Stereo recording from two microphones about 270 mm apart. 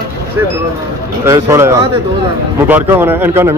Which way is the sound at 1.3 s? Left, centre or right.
Centre.